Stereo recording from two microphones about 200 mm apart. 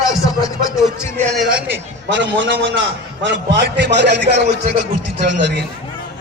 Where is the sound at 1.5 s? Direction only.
60° right (ahead or behind).